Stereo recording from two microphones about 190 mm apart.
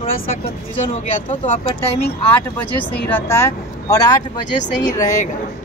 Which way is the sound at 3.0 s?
10° left (ahead or behind).